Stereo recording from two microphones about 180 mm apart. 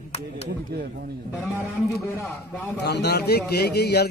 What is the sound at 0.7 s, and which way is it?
Speech, 60° right (ahead or behind).